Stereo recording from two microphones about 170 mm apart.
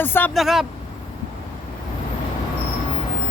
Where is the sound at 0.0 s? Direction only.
10° left (ahead or behind).